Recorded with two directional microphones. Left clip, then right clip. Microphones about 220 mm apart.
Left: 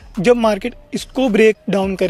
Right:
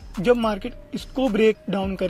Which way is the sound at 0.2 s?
50° left (ahead or behind).